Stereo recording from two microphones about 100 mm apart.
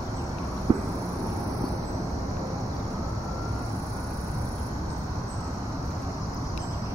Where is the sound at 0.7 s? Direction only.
50° right (ahead or behind).